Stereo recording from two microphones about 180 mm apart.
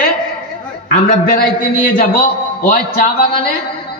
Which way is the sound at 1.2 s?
55° left (ahead or behind).